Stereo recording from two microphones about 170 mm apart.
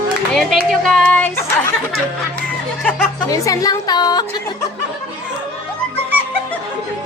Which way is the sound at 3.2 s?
20° left (ahead or behind).